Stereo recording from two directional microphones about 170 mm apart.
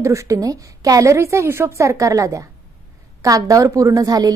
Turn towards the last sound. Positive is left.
turn(degrees=-20)  # may be behind; listen again after turning